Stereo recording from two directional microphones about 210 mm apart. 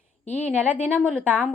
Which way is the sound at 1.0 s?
10° right (ahead or behind).